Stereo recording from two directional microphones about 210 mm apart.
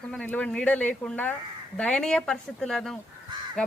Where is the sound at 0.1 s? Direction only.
5° left (ahead or behind).